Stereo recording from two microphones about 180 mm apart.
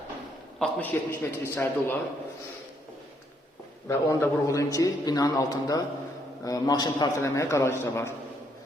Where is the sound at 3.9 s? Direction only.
15° left (ahead or behind).